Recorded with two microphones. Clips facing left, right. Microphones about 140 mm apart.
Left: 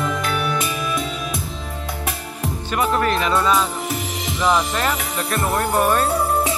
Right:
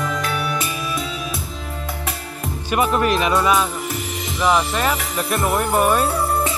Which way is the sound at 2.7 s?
15° right (ahead or behind).